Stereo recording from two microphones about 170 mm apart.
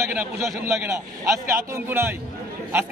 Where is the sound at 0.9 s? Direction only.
15° right (ahead or behind).